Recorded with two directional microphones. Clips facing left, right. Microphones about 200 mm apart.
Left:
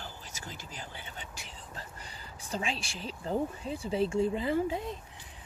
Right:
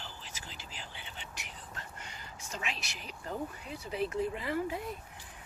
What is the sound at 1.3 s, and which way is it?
Speech, 30° left (ahead or behind).